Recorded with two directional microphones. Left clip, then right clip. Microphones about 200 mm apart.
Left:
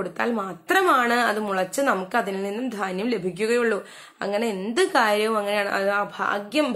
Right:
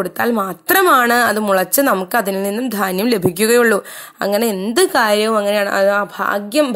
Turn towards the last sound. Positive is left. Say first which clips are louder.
# right 7 dB
turn(degrees=-45)  # may be behind; listen again after turning